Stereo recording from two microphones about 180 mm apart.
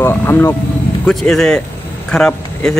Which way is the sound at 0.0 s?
10° left (ahead or behind).